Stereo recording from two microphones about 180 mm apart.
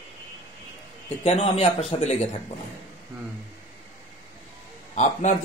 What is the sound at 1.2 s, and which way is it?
Speech, 35° left (ahead or behind).